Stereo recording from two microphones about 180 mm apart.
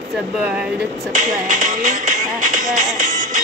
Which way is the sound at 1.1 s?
45° right (ahead or behind).